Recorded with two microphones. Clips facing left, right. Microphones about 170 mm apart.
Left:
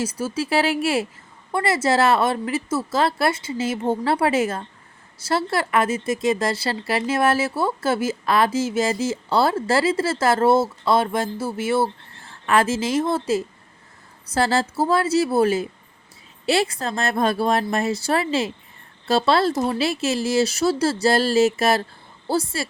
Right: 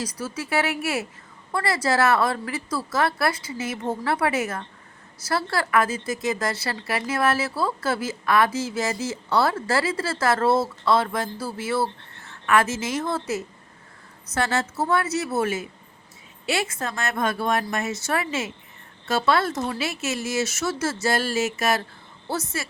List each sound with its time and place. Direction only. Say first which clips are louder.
0.0 s speech: left 6 dB; 25° left (ahead or behind)